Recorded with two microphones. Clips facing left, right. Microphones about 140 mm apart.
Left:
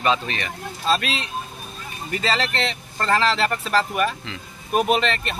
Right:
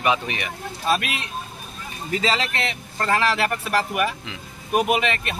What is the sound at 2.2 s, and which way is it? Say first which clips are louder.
Speech: left 2 dB; 15° right (ahead or behind).